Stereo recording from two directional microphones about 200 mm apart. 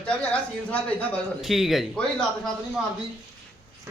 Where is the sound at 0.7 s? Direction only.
5° left (ahead or behind).